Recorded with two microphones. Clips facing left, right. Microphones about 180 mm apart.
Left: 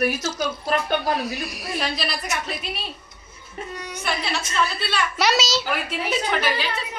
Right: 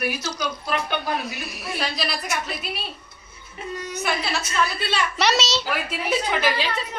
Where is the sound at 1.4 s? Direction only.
Centre (ahead or behind).